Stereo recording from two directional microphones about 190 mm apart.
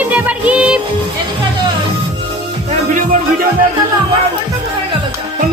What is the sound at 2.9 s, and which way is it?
Music, 45° right (ahead or behind).